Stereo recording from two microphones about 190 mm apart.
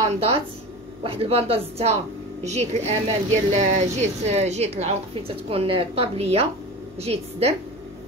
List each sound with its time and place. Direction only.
0.1 s a woman's voice: 30° right (ahead or behind)